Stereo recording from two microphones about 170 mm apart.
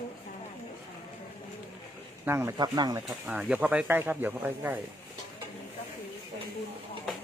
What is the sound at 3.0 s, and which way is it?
Speech, 5° right (ahead or behind).